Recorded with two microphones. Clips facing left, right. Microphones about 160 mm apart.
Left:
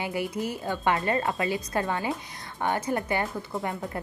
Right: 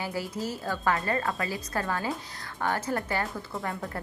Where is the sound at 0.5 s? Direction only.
20° left (ahead or behind).